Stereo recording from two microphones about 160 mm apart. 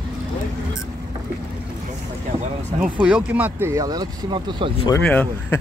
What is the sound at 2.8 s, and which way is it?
Speech, 5° right (ahead or behind).